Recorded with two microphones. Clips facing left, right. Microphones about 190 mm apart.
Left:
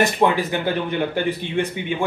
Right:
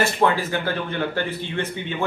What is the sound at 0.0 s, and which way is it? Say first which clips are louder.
Speech: left 2 dB; 15° left (ahead or behind).